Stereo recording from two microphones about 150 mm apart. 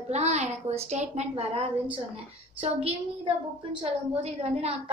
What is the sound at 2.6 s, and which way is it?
A woman's voice, 40° right (ahead or behind).